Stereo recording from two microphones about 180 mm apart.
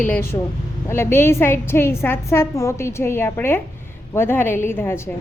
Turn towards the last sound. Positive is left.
turn(degrees=10)  # may be behind; listen again after turning